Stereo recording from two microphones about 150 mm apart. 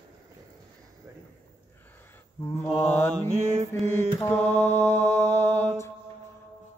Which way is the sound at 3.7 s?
15° left (ahead or behind).